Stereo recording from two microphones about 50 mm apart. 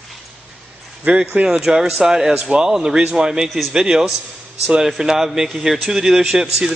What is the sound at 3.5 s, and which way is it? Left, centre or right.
Speech, centre.